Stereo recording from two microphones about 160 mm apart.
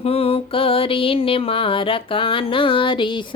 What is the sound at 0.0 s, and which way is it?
Mantra, 35° left (ahead or behind).